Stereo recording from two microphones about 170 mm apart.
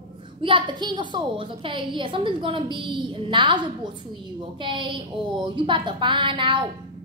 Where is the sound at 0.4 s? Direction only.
30° right (ahead or behind).